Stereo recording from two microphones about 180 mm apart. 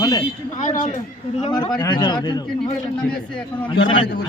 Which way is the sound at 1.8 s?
20° left (ahead or behind).